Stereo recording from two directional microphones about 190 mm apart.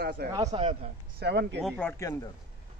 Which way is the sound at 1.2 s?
60° right (ahead or behind).